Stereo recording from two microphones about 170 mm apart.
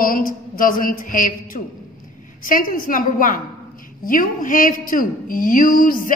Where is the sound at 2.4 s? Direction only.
55° left (ahead or behind).